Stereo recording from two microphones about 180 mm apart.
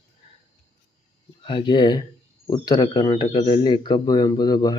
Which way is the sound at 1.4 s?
30° left (ahead or behind).